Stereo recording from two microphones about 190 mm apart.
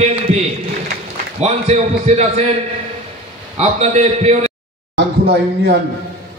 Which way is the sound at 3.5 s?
35° right (ahead or behind).